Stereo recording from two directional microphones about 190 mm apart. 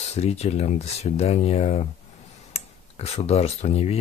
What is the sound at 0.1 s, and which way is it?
Speech, 35° left (ahead or behind).